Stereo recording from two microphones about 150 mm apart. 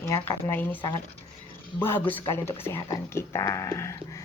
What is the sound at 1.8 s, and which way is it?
A woman's voice, 15° left (ahead or behind).